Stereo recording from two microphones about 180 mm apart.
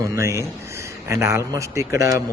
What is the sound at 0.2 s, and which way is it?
A man's voice, 15° right (ahead or behind).